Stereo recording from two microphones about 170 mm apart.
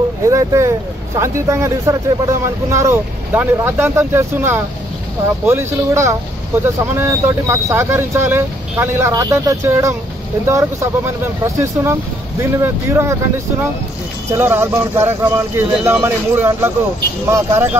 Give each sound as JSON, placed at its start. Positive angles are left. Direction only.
{"t": 0.3, "sound": "speech", "side_deg": -20}
{"t": 14.3, "sound": "speech", "side_deg": -15}